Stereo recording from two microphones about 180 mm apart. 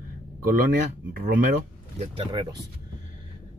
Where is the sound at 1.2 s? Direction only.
50° right (ahead or behind).